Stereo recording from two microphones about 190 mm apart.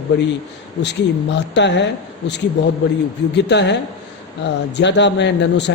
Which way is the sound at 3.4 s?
65° left (ahead or behind).